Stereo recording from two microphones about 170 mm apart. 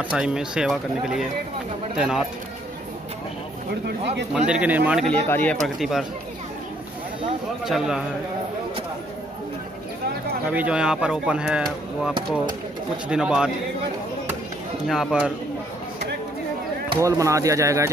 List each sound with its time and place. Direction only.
0.1 s speech: 5° right (ahead or behind)
3.8 s speech: 85° right
4.3 s speech: 5° right (ahead or behind)
5.0 s speech: 10° left (ahead or behind)
5.8 s speech: centre (ahead or behind)
7.6 s speech: 5° right (ahead or behind)
10.5 s speech: 5° right (ahead or behind)
13.1 s speech: 5° right (ahead or behind)
14.9 s speech: centre (ahead or behind)
17.0 s speech: 20° right (ahead or behind)